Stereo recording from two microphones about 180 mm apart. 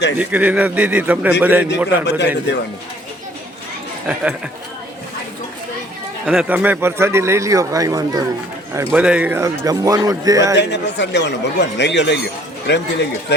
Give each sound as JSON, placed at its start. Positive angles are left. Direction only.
{"t": 0.2, "sound": "a man's voice", "side_deg": -10}
{"t": 2.0, "sound": "speech", "side_deg": 75}
{"t": 4.0, "sound": "a man's voice", "side_deg": -5}
{"t": 6.2, "sound": "a man's voice", "side_deg": -5}
{"t": 9.0, "sound": "a man's voice", "side_deg": -5}
{"t": 10.6, "sound": "speech", "side_deg": 75}